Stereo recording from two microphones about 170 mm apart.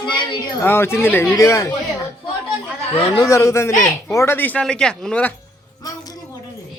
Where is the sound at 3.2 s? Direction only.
15° left (ahead or behind).